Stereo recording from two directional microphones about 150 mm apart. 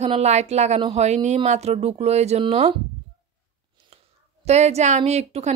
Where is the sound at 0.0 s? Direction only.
45° right (ahead or behind).